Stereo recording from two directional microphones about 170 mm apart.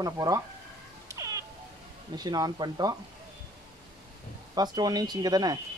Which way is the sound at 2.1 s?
25° right (ahead or behind).